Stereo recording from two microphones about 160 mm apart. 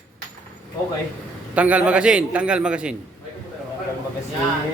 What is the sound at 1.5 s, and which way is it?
A man's voice, 10° right (ahead or behind).